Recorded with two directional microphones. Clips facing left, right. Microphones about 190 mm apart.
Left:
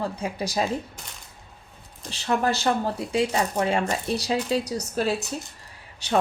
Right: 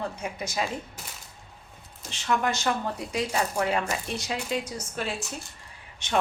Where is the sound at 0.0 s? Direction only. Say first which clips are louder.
Left 4 dB; 30° left (ahead or behind).